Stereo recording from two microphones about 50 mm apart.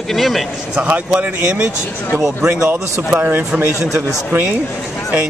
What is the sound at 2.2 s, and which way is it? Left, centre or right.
Speech, right.